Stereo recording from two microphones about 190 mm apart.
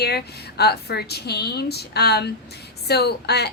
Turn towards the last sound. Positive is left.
turn(degrees=60)  # may be behind; listen again after turning